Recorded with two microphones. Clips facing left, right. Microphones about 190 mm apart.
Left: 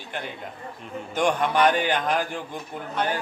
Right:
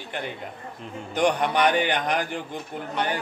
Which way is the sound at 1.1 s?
15° right (ahead or behind).